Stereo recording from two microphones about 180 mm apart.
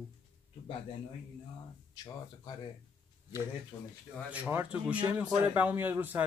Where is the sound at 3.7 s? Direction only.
25° left (ahead or behind).